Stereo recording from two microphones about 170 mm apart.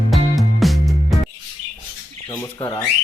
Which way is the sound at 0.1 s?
Centre (ahead or behind).